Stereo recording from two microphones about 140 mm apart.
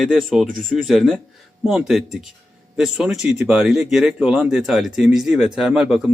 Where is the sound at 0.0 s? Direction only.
Centre (ahead or behind).